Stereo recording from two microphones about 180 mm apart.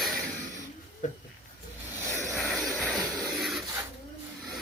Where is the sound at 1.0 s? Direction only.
45° left (ahead or behind).